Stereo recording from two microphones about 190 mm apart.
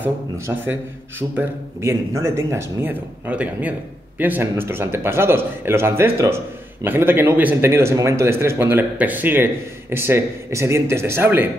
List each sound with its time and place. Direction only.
0.5 s speech: 10° right (ahead or behind)